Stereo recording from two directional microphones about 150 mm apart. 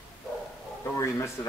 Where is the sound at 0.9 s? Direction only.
20° left (ahead or behind).